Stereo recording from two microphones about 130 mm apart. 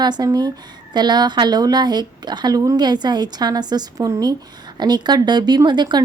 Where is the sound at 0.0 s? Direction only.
30° right (ahead or behind).